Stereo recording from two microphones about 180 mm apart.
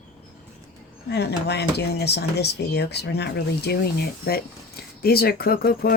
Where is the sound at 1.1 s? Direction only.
65° left (ahead or behind).